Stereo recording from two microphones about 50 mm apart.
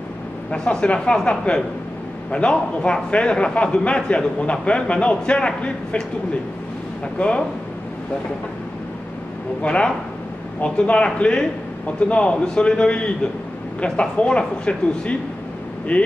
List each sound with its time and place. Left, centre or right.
0.5 s a man's voice: left
7.2 s a man's voice: centre
9.6 s a man's voice: left